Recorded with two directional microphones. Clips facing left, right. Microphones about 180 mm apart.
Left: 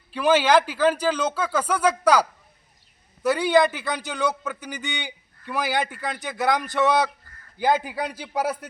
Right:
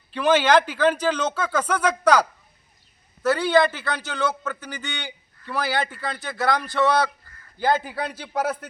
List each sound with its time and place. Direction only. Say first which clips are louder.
0.1 s a man's voice: even; 5° left (ahead or behind)
3.2 s a man's voice: even; 15° left (ahead or behind)